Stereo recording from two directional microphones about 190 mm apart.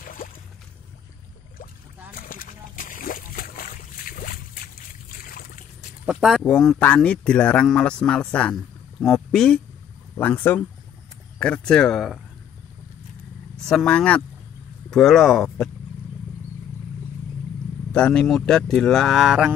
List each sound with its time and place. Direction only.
0.0 s a sound: 45° left (ahead or behind)
2.1 s splash: 50° left (ahead or behind)
5.2 s a sound: 50° left (ahead or behind)
6.0 s speech: 5° right (ahead or behind)
13.7 s speech: 5° left (ahead or behind)
17.9 s speech: 5° left (ahead or behind)